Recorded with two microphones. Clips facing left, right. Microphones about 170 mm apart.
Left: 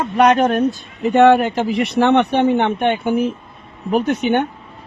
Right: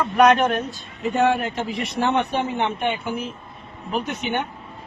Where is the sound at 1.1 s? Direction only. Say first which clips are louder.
Left 9 dB; 70° left (ahead or behind).